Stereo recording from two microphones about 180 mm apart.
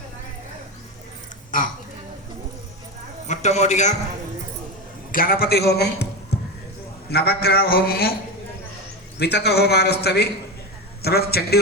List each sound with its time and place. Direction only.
1.5 s a sound: 45° left (ahead or behind)
3.2 s a man's voice: 40° left (ahead or behind)
5.1 s a man's voice: 55° left (ahead or behind)
6.3 s basketball bounce: 65° left (ahead or behind)
7.1 s a man's voice: 60° left (ahead or behind)
9.1 s a man's voice: 65° left (ahead or behind)